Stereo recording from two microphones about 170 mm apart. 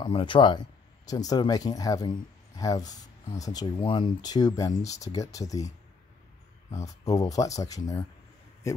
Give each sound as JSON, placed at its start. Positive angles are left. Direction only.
{"t": 0.0, "sound": "speech", "side_deg": 30}
{"t": 6.7, "sound": "speech", "side_deg": 20}